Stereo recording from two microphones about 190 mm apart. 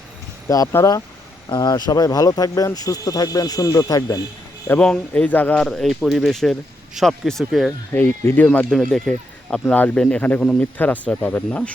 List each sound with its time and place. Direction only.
0.4 s speech: 15° left (ahead or behind)
4.7 s speech: 5° left (ahead or behind)
8.2 s speech: 10° left (ahead or behind)